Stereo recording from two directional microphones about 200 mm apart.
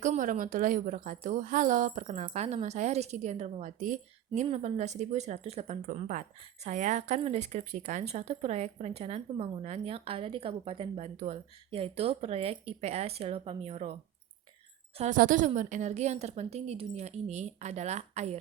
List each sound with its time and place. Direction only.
0.0 s speech: 40° right (ahead or behind)
14.9 s speech: 35° right (ahead or behind)